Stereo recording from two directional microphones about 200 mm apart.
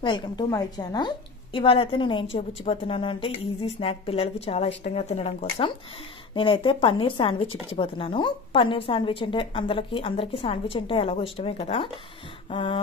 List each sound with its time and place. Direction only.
0.0 s a woman's voice: 20° left (ahead or behind)